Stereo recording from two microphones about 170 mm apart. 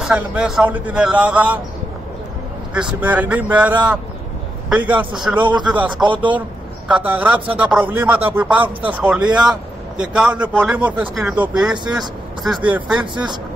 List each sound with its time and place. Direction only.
0.0 s speech: 5° right (ahead or behind)
2.7 s speech: 5° right (ahead or behind)
6.0 s speech: 30° right (ahead or behind)
6.9 s speech: 10° right (ahead or behind)
13.0 s speech: 25° right (ahead or behind)